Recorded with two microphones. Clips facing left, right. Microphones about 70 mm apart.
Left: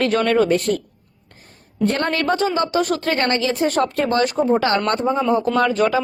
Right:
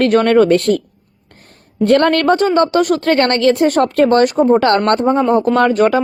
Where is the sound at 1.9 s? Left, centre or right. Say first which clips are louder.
Right 9 dB; right.